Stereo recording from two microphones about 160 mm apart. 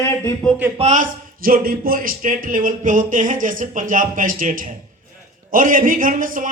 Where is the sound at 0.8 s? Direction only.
45° right (ahead or behind).